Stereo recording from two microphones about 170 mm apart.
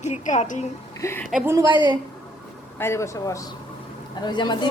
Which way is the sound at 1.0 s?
15° left (ahead or behind).